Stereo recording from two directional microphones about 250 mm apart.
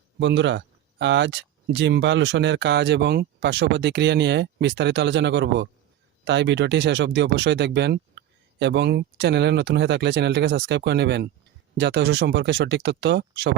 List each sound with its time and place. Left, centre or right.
0.2 s speech: right